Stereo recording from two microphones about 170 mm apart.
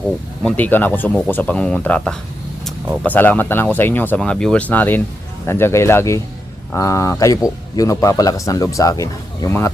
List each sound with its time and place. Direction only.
0.4 s speech: 10° left (ahead or behind)